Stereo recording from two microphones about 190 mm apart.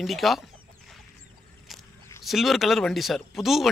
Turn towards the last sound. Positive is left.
turn(degrees=0)  # may be behind; listen again after turning